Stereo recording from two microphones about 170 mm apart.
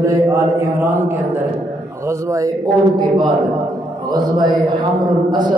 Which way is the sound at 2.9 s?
25° right (ahead or behind).